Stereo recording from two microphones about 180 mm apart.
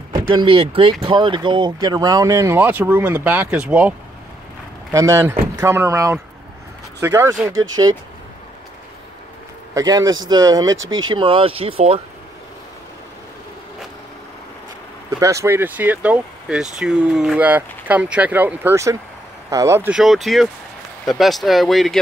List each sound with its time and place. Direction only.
0.1 s speech: 25° right (ahead or behind); by 3.9 s 10° right (ahead or behind)
4.9 s speech: 15° right (ahead or behind)
9.8 s speech: 20° right (ahead or behind)
10.8 s speech: 90° right
11.1 s speech: 30° right (ahead or behind)
15.0 s speech: 20° right (ahead or behind)
19.9 s speech: centre (ahead or behind)